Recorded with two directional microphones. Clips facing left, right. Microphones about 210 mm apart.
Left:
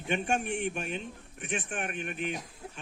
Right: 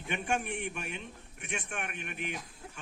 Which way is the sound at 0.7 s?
30° left (ahead or behind).